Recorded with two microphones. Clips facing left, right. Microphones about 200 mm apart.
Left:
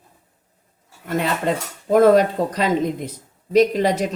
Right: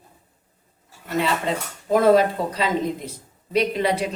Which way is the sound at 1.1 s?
50° left (ahead or behind).